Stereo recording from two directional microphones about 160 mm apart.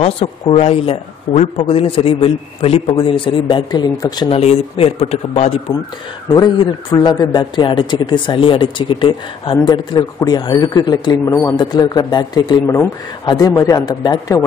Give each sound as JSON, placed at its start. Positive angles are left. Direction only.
{"t": 0.0, "sound": "speech", "side_deg": 40}
{"t": 4.4, "sound": "speech", "side_deg": 40}
{"t": 5.7, "sound": "a man's voice", "side_deg": 20}